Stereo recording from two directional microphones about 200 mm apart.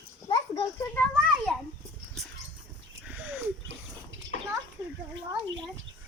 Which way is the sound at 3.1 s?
10° right (ahead or behind).